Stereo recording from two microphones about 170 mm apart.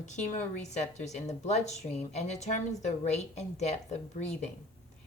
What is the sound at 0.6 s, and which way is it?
A woman's voice, 45° left (ahead or behind).